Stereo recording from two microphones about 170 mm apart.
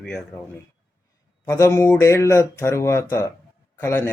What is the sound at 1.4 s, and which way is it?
Speech, 15° left (ahead or behind).